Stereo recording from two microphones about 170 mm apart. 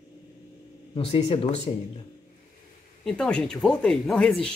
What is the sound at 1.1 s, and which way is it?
Speech, 35° left (ahead or behind).